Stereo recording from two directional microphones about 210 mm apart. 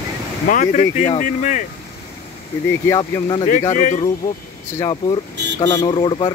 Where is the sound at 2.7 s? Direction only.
15° left (ahead or behind).